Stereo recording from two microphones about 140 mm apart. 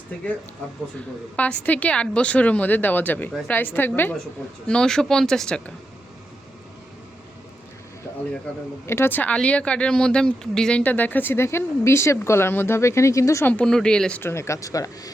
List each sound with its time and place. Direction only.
1.4 s speech: 10° left (ahead or behind)
8.9 s speech: 15° left (ahead or behind)
13.5 s speech: 5° left (ahead or behind)
14.2 s speech: 20° left (ahead or behind)